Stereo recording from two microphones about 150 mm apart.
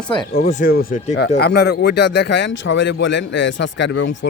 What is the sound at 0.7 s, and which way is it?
Speech, 90° left.